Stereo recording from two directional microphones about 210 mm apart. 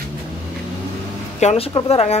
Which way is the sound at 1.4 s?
30° left (ahead or behind).